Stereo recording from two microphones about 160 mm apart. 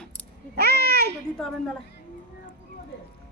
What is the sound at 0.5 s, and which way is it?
Speech, 85° right.